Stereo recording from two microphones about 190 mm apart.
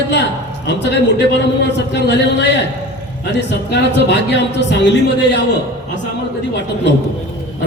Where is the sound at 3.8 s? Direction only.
65° left (ahead or behind).